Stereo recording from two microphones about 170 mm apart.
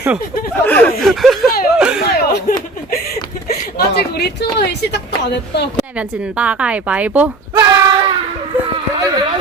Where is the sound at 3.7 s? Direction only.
70° left (ahead or behind); by 5.6 s 85° left.